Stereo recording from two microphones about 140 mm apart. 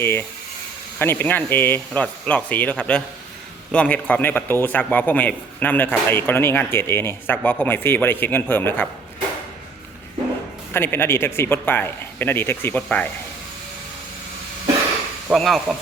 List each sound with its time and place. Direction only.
0.0 s speech: 15° left (ahead or behind)
10.8 s speech: 15° left (ahead or behind)
15.3 s speech: centre (ahead or behind)